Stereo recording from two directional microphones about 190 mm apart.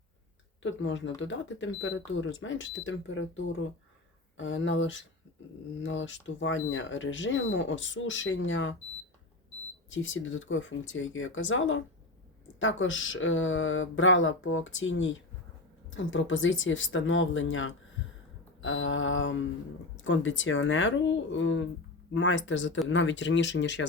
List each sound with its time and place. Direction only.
0.6 s speech: 75° left (ahead or behind)
9.9 s speech: 90° left; by 23.8 s 70° left (ahead or behind)